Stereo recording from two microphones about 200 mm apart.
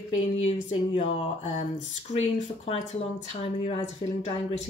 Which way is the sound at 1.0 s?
30° left (ahead or behind).